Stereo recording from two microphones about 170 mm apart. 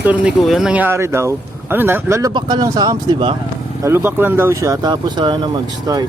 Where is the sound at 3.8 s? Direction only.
15° right (ahead or behind).